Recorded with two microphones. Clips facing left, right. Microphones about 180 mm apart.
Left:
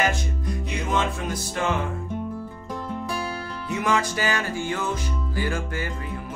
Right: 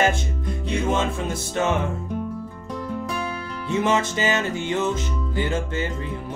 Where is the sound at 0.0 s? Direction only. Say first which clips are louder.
Right 3 dB; 25° right (ahead or behind).